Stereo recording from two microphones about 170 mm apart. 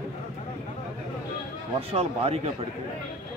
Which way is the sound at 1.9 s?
35° right (ahead or behind).